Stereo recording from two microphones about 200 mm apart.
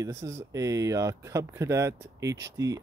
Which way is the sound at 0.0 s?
15° right (ahead or behind).